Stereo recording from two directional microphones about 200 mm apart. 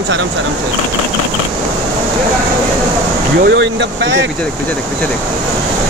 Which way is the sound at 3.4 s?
60° right (ahead or behind).